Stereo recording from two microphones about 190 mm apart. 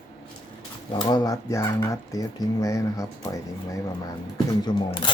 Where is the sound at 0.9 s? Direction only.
25° left (ahead or behind).